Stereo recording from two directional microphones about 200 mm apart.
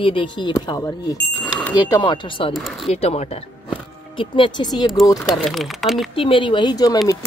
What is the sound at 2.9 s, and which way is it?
Speech, 30° left (ahead or behind).